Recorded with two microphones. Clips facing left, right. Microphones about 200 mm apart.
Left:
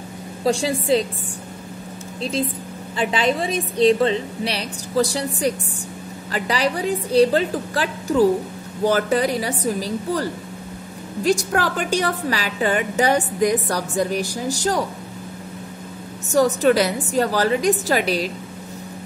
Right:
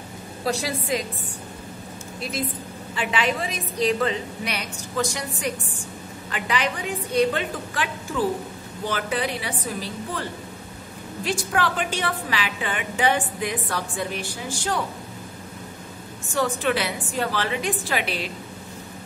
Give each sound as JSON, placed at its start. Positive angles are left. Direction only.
{"t": 0.5, "sound": "a woman's voice", "side_deg": 30}
{"t": 3.0, "sound": "a woman's voice", "side_deg": 35}
{"t": 16.3, "sound": "a woman's voice", "side_deg": 40}